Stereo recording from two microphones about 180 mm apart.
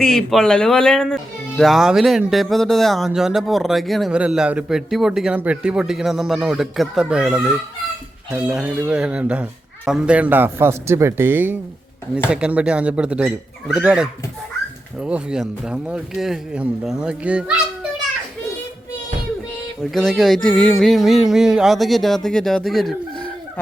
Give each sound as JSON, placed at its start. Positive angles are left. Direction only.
{"t": 0.0, "sound": "a man's voice", "side_deg": 0}
{"t": 19.8, "sound": "speech", "side_deg": 0}